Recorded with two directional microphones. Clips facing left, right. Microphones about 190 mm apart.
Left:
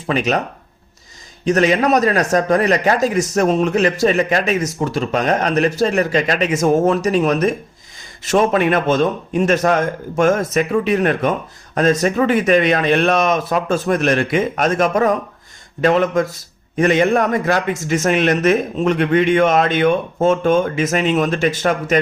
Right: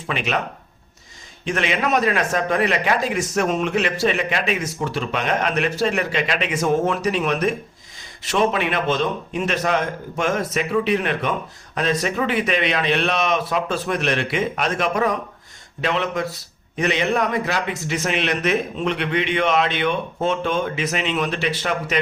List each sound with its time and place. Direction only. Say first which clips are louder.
0.1 s a man's voice: left 6 dB; 40° left (ahead or behind)
1.5 s a man's voice: left 8 dB; 40° left (ahead or behind)